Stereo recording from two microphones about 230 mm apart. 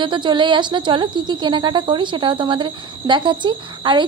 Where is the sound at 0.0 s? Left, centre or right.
Right.